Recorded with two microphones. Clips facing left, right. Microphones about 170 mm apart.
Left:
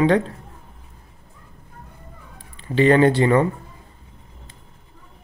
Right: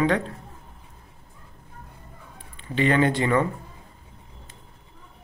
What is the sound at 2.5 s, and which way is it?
Speech, 35° left (ahead or behind).